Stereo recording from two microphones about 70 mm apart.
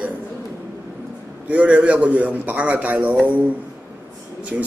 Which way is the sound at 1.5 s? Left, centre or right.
Right.